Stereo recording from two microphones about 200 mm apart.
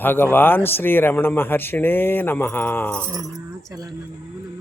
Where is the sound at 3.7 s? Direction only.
20° right (ahead or behind).